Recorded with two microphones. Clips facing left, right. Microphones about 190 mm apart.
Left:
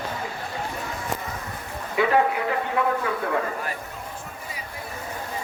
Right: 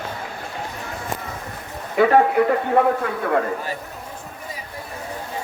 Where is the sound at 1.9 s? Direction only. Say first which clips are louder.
Right 6 dB; 50° right (ahead or behind).